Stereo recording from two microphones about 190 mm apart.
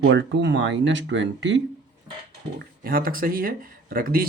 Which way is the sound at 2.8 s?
50° right (ahead or behind).